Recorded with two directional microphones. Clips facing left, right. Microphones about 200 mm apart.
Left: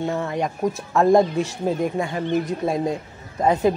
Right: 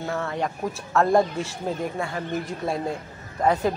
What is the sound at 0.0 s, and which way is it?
Speech, 15° left (ahead or behind).